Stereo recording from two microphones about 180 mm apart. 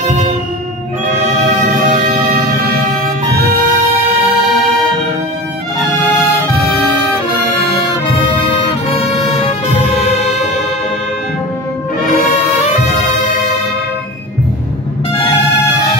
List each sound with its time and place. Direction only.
1.9 s music: 45° right (ahead or behind)
8.9 s music: 35° left (ahead or behind)